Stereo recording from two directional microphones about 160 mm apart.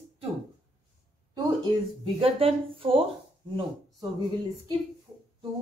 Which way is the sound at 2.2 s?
35° right (ahead or behind).